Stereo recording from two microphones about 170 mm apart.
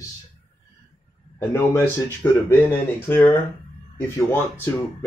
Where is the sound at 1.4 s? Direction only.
15° left (ahead or behind).